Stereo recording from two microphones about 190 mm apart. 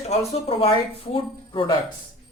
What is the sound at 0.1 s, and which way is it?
Speech, 30° left (ahead or behind).